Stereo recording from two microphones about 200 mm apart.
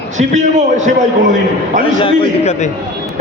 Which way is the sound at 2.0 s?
30° left (ahead or behind).